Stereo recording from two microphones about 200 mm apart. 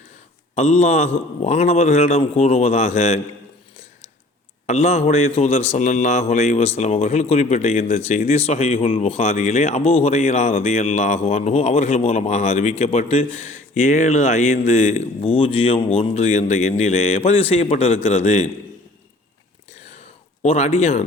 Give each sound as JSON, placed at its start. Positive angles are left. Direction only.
{"t": 0.5, "sound": "a man's voice", "side_deg": 35}
{"t": 4.6, "sound": "a man's voice", "side_deg": 35}
{"t": 20.4, "sound": "a man's voice", "side_deg": 35}